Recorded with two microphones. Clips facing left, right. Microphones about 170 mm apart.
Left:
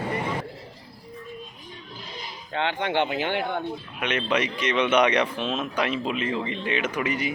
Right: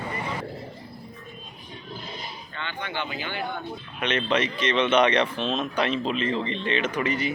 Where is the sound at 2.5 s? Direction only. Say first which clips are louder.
Left 9 dB; 85° left; by 3.6 s 70° left (ahead or behind).